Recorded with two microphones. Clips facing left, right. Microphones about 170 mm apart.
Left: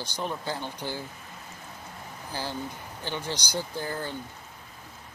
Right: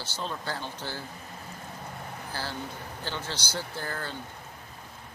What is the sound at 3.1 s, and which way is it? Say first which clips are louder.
Speech: left 3 dB; 15° left (ahead or behind).